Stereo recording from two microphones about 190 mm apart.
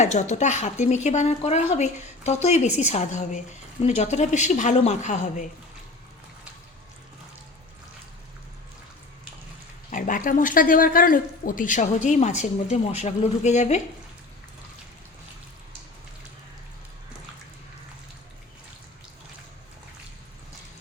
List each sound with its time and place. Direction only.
0.0 s speech: 35° left (ahead or behind)
9.9 s speech: 45° left (ahead or behind)